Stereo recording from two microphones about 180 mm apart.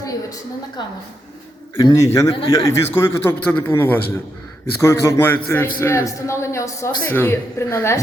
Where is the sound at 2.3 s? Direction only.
30° left (ahead or behind).